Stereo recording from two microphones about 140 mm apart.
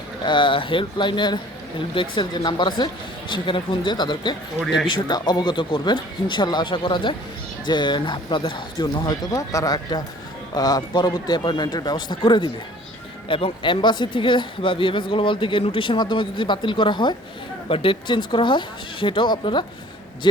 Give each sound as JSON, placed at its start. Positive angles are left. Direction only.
{"t": 0.3, "sound": "speech", "side_deg": 35}